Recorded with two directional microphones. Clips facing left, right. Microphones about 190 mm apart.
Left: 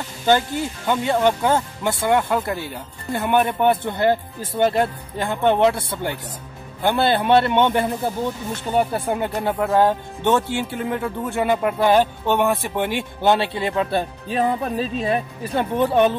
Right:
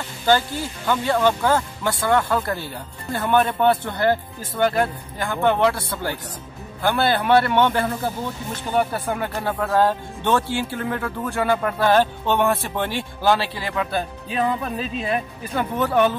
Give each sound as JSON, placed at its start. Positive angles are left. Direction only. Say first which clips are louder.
{"t": 0.3, "sound": "speech", "louder": "left 1 dB", "side_deg": 20}